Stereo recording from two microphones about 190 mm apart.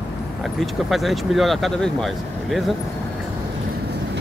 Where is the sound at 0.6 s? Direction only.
Centre (ahead or behind).